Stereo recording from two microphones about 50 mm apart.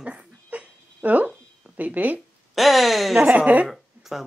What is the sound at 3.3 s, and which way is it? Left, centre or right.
Speech, right.